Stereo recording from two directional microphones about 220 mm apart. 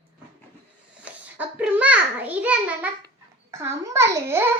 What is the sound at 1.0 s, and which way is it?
A child's voice, 5° right (ahead or behind).